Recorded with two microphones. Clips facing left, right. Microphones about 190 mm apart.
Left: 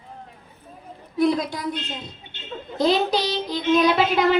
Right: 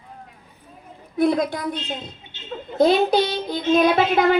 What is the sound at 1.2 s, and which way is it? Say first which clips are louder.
Speech: right 1 dB; 55° right (ahead or behind).